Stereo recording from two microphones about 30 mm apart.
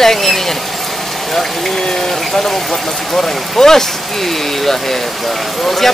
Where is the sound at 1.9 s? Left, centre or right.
Centre.